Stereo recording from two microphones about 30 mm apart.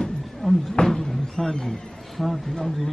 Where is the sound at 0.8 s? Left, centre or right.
Centre.